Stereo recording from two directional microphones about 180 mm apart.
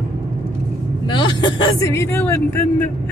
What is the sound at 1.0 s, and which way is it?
Speech, 25° left (ahead or behind).